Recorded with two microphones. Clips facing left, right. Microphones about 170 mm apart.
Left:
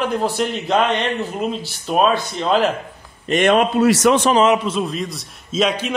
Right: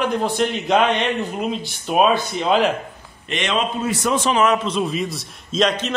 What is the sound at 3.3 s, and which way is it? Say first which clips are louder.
Speech: left 8 dB; 55° left (ahead or behind).